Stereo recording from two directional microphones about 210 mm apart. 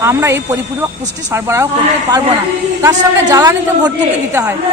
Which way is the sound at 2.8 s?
15° right (ahead or behind).